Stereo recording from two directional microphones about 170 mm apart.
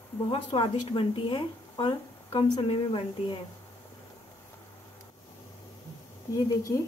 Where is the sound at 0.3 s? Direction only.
30° left (ahead or behind).